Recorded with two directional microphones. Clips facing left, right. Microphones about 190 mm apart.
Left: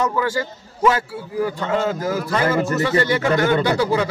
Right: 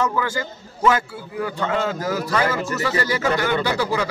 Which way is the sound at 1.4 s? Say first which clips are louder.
Left 2 dB; 25° left (ahead or behind).